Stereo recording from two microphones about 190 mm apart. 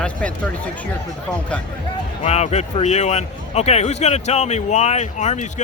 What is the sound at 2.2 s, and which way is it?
A man's voice, 35° left (ahead or behind).